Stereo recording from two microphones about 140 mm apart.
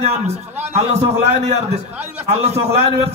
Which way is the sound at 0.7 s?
50° right (ahead or behind).